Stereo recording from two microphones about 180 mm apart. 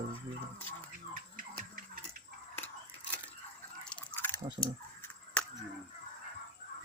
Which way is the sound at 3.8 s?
10° left (ahead or behind).